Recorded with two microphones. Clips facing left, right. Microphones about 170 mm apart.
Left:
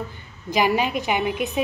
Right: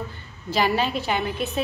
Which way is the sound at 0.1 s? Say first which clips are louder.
Left 2 dB; 15° left (ahead or behind).